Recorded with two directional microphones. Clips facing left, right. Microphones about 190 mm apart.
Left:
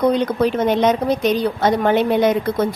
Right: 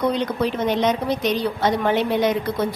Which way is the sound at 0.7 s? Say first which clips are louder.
Left 4 dB; 50° left (ahead or behind).